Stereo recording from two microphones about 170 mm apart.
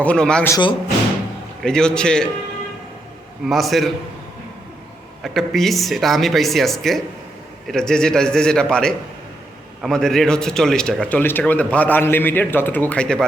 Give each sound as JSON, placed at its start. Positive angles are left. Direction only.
{"t": 0.0, "sound": "speech", "side_deg": 5}
{"t": 0.5, "sound": "speech", "side_deg": 30}
{"t": 1.6, "sound": "speech", "side_deg": 5}
{"t": 3.4, "sound": "speech", "side_deg": 0}
{"t": 5.2, "sound": "speech", "side_deg": 0}